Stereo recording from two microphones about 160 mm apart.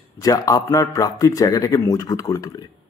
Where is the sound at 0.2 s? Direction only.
25° left (ahead or behind).